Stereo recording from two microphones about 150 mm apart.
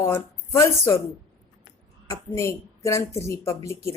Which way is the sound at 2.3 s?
20° left (ahead or behind).